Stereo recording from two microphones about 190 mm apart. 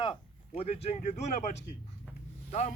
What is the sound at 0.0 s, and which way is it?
A man's voice, 30° left (ahead or behind).